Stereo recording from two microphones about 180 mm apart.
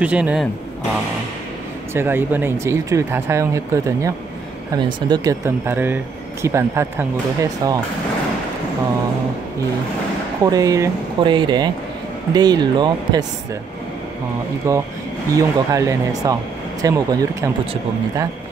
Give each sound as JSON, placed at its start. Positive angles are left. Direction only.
{"t": 0.0, "sound": "speech", "side_deg": -5}
{"t": 2.0, "sound": "speech", "side_deg": -10}
{"t": 10.4, "sound": "speech", "side_deg": -20}
{"t": 14.7, "sound": "speech", "side_deg": -20}